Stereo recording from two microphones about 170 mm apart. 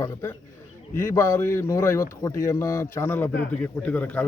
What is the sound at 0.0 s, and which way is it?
Speech, 15° left (ahead or behind).